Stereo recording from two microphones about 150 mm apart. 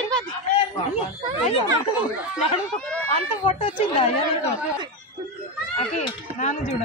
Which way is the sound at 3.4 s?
35° left (ahead or behind).